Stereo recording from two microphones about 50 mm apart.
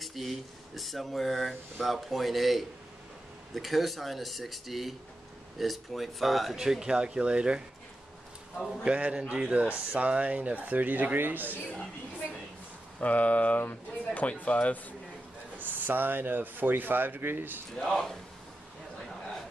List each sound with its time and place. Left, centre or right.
0.0 s speech: centre
6.6 s speech: centre
8.8 s speech: right
13.0 s speech: left
15.6 s speech: right
17.7 s speech: centre